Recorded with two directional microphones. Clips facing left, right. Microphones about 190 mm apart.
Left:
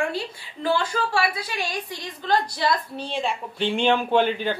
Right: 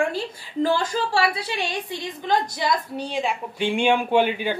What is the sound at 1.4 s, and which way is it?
A woman's voice, 25° right (ahead or behind).